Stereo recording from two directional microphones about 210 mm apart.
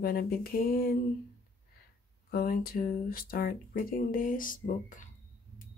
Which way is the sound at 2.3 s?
45° left (ahead or behind).